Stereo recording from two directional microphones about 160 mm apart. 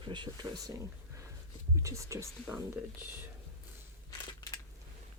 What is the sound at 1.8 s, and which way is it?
Speech, 20° right (ahead or behind).